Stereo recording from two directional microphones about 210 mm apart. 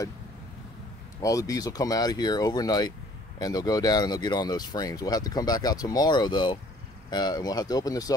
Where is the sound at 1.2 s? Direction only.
15° left (ahead or behind).